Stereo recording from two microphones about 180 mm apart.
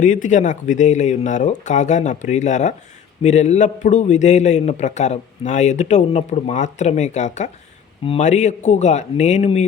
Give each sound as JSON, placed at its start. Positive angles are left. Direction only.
{"t": 0.0, "sound": "a man's voice", "side_deg": 45}